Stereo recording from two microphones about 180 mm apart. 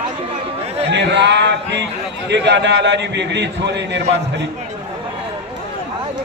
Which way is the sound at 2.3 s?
75° right (ahead or behind).